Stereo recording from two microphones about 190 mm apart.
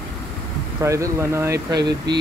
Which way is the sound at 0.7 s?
15° right (ahead or behind).